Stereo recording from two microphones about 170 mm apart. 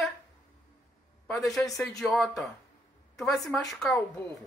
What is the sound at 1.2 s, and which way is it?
A woman's voice, centre (ahead or behind).